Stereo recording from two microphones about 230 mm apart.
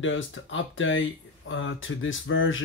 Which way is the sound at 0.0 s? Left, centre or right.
Left.